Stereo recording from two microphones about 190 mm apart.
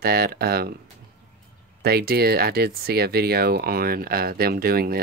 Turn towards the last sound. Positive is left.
turn(degrees=-50)  # may be behind; listen again after turning